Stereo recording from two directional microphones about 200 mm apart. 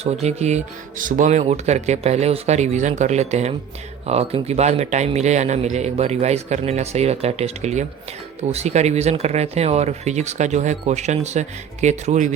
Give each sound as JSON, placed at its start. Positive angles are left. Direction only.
{"t": 0.0, "sound": "speech", "side_deg": -30}